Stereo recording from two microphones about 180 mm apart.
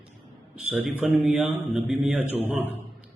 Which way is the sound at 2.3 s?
10° right (ahead or behind).